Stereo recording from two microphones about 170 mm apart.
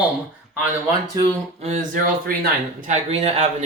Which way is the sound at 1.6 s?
45° right (ahead or behind).